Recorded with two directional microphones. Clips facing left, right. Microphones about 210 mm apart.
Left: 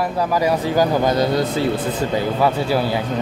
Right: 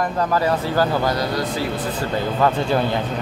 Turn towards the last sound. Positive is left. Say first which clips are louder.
# left 1 dB
turn(degrees=5)  # may be behind; listen again after turning